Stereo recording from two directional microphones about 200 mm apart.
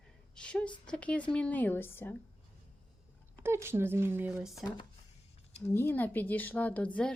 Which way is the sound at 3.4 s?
15° right (ahead or behind).